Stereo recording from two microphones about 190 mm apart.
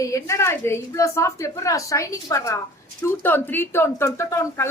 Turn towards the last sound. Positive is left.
turn(degrees=15)  # may be behind; listen again after turning